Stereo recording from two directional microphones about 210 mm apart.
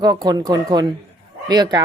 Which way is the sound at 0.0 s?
20° right (ahead or behind).